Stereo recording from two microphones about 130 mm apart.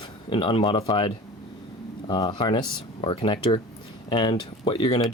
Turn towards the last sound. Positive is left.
turn(degrees=35)  # may be behind; listen again after turning